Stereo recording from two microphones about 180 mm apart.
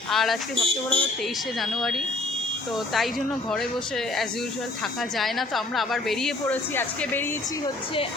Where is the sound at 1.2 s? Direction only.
Centre (ahead or behind).